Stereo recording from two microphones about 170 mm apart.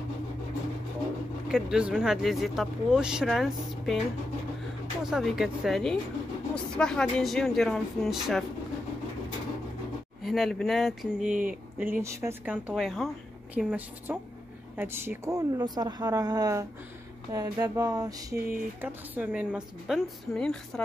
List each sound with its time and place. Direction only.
1.5 s speech: 5° right (ahead or behind)
5.1 s speech: centre (ahead or behind)
10.2 s a woman's voice: centre (ahead or behind); by 18.4 s 20° right (ahead or behind)
18.4 s speech: 55° right (ahead or behind)
18.8 s speech: 10° right (ahead or behind)